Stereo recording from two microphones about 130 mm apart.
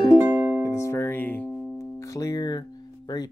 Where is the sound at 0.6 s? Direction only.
20° left (ahead or behind).